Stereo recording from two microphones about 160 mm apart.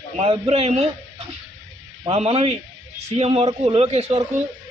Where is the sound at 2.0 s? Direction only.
40° right (ahead or behind).